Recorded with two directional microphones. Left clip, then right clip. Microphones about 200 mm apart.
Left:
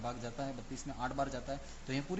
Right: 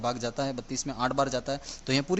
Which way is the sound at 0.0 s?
45° right (ahead or behind).